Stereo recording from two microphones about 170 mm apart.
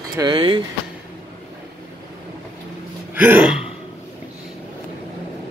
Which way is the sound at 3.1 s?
10° right (ahead or behind).